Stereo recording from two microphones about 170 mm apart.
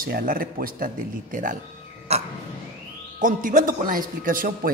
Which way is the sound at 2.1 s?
40° right (ahead or behind).